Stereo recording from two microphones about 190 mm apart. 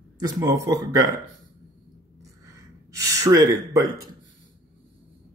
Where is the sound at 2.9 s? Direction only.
15° right (ahead or behind).